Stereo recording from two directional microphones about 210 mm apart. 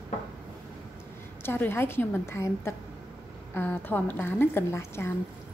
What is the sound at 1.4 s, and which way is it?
A woman's voice, 10° left (ahead or behind).